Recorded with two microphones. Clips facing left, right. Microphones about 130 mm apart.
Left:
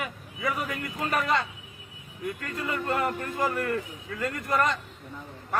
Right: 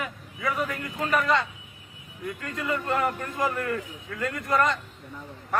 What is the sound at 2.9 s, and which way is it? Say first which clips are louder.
A man's voice: even; 5° left (ahead or behind).